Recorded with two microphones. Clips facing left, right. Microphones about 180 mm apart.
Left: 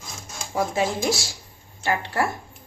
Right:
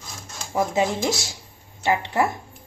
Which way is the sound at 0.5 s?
20° right (ahead or behind).